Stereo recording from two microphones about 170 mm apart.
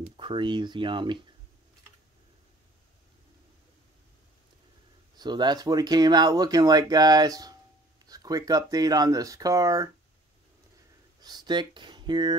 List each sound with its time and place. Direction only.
0.0 s speech: 30° right (ahead or behind)
5.1 s speech: 25° right (ahead or behind)
11.1 s speech: 25° right (ahead or behind)